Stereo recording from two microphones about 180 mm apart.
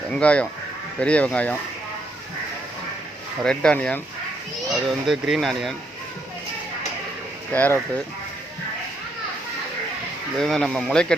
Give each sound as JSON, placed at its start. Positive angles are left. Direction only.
{"t": 0.1, "sound": "speech", "side_deg": 5}
{"t": 3.4, "sound": "speech", "side_deg": 5}
{"t": 7.5, "sound": "speech", "side_deg": 10}
{"t": 10.3, "sound": "speech", "side_deg": 0}